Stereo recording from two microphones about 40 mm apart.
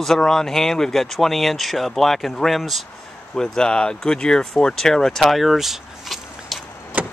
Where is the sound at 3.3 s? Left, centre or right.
Centre.